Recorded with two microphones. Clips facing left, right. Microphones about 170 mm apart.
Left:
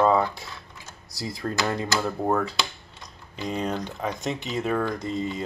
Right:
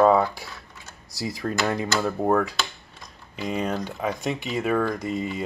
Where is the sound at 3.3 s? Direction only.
5° right (ahead or behind).